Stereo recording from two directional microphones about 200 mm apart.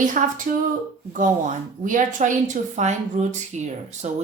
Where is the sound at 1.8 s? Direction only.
40° right (ahead or behind).